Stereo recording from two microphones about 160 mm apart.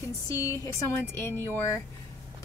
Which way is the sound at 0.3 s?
20° left (ahead or behind).